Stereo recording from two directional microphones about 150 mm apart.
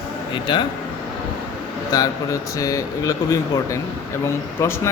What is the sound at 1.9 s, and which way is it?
Speech, 25° left (ahead or behind).